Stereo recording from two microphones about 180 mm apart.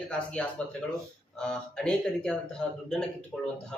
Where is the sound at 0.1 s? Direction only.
5° left (ahead or behind).